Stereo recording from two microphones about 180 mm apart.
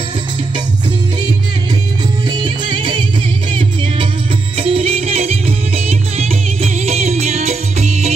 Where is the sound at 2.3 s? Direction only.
25° right (ahead or behind).